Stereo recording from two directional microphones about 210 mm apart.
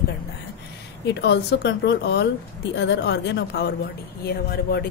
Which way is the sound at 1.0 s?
55° left (ahead or behind).